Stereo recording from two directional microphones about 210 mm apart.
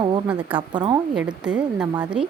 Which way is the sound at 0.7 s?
20° right (ahead or behind).